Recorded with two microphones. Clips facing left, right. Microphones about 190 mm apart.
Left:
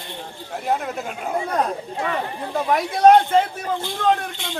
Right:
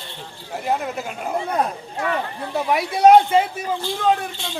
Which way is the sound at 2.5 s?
10° right (ahead or behind).